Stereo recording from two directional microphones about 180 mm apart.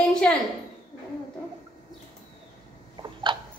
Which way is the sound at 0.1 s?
5° left (ahead or behind).